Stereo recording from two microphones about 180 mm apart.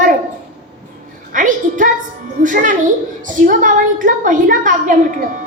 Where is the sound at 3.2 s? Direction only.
45° right (ahead or behind).